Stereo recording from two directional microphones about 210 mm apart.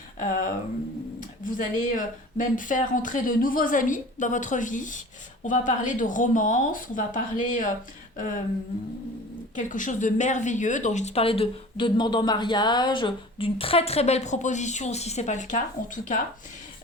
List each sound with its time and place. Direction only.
0.2 s speech: 40° left (ahead or behind)
9.6 s speech: 40° left (ahead or behind)